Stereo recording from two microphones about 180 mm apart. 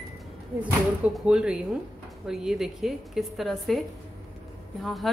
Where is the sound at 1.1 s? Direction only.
5° right (ahead or behind).